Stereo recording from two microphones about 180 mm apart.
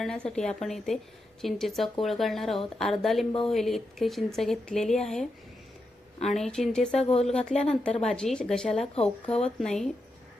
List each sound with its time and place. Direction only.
0.0 s a woman's voice: 5° left (ahead or behind)
6.2 s a woman's voice: centre (ahead or behind)
7.0 s speech: 35° left (ahead or behind)
7.3 s a woman's voice: 5° left (ahead or behind)